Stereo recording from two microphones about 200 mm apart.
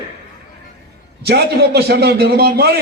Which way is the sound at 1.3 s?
55° right (ahead or behind).